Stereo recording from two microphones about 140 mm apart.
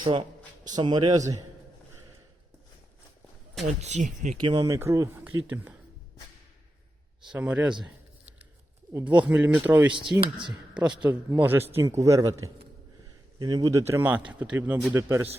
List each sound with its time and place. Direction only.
0.0 s a man's voice: 35° right (ahead or behind)
3.7 s speech: 55° right (ahead or behind)
4.4 s a man's voice: 30° right (ahead or behind); by 5.7 s 10° right (ahead or behind)
7.3 s a sound: 10° right (ahead or behind)
8.9 s a man's voice: 20° right (ahead or behind)